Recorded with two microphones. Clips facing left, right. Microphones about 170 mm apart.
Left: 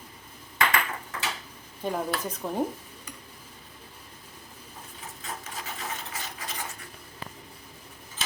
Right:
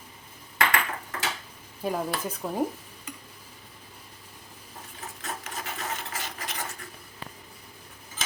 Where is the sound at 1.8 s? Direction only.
5° right (ahead or behind).